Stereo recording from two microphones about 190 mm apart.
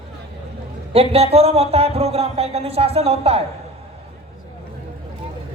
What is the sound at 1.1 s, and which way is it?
Speech, 30° right (ahead or behind).